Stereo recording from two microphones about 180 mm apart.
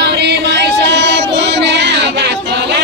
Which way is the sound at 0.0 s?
70° right (ahead or behind).